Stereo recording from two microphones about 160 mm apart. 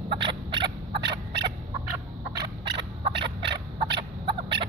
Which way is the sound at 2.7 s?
30° right (ahead or behind).